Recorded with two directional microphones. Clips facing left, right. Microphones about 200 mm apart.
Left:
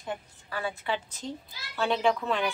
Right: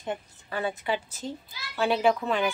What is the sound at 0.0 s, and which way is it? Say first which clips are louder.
A woman's voice: right 3 dB; 20° right (ahead or behind).